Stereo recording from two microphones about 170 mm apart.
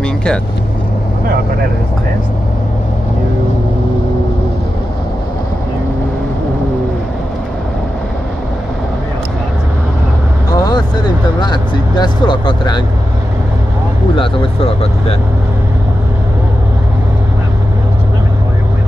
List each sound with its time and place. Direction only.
0.0 s vehicle: 5° left (ahead or behind)
10.5 s vehicle: 25° left (ahead or behind)
11.4 s speech: 25° left (ahead or behind)
14.1 s speech: 30° left (ahead or behind)